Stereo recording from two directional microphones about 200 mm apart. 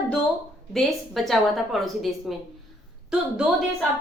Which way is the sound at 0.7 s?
Centre (ahead or behind).